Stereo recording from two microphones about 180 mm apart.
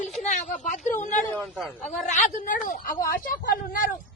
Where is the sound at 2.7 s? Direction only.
55° left (ahead or behind).